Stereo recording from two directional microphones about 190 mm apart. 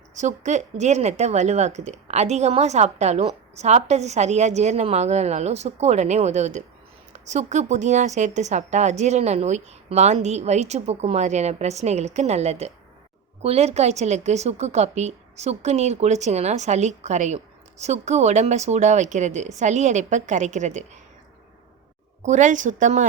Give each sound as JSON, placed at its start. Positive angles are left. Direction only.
{"t": 0.2, "sound": "a woman's voice", "side_deg": -40}
{"t": 22.2, "sound": "a woman's voice", "side_deg": -40}